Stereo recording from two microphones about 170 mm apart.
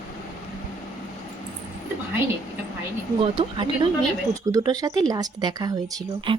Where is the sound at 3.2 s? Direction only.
35° right (ahead or behind).